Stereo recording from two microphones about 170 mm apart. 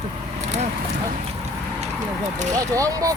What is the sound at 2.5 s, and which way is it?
Speech, 20° right (ahead or behind).